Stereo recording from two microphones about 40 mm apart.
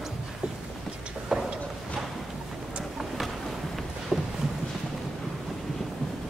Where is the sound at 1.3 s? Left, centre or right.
Centre.